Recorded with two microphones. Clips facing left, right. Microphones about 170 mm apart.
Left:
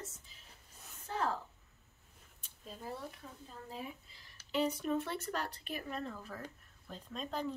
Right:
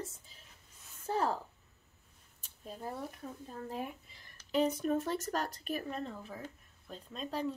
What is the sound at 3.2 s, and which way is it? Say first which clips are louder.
Speech: right 7 dB; 45° right (ahead or behind).